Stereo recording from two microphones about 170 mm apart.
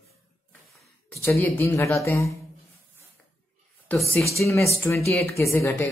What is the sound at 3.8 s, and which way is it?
Speech, 10° left (ahead or behind).